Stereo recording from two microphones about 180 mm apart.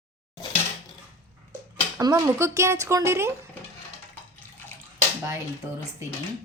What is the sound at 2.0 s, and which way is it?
A woman's voice, 20° right (ahead or behind).